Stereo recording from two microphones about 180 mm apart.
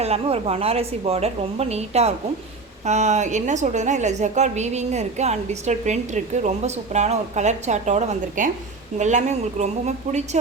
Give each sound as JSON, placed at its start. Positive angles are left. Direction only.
{"t": 0.0, "sound": "a woman's voice", "side_deg": -35}